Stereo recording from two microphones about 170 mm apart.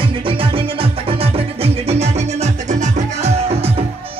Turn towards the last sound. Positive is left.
turn(degrees=-35)  # may be behind; listen again after turning